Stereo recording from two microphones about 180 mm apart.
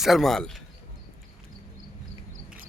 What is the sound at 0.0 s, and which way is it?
Speech, centre (ahead or behind).